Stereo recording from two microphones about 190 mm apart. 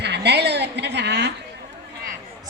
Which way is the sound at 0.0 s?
60° right (ahead or behind).